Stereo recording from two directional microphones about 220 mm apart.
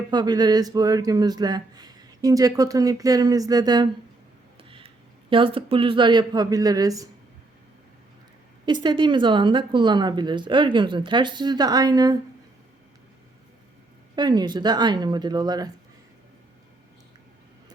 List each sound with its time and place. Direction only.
0.1 s speech: 20° right (ahead or behind)
4.5 s a sound: 25° right (ahead or behind)
5.3 s speech: 25° right (ahead or behind)
8.6 s speech: 20° right (ahead or behind)
14.2 s speech: 20° right (ahead or behind)